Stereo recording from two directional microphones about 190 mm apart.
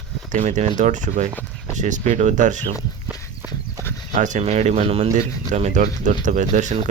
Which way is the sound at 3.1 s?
10° right (ahead or behind).